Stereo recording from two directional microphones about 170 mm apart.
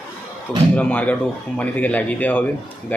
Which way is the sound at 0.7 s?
10° left (ahead or behind).